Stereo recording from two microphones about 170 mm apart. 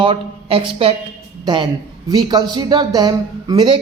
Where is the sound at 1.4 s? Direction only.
30° right (ahead or behind).